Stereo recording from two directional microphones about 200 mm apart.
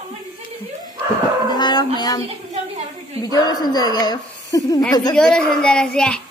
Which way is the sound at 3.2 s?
20° left (ahead or behind).